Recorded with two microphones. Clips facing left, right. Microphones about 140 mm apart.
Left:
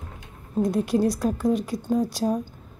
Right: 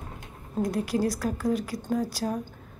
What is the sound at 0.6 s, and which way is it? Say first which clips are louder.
A woman's voice: left 4 dB; 25° left (ahead or behind).